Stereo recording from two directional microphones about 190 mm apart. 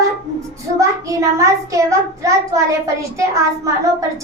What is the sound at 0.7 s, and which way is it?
A child's voice, 15° right (ahead or behind).